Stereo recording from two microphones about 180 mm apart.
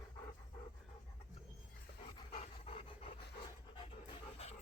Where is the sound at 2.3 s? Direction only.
35° left (ahead or behind).